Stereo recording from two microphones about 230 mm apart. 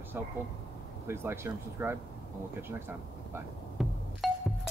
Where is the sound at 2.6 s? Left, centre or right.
Centre.